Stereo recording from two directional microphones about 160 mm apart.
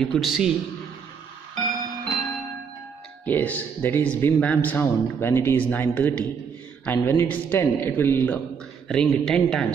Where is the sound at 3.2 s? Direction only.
10° left (ahead or behind).